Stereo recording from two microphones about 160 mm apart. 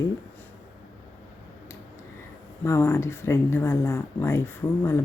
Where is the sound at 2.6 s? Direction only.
15° left (ahead or behind).